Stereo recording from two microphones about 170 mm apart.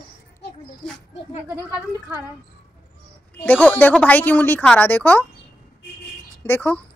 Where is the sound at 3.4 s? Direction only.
10° left (ahead or behind).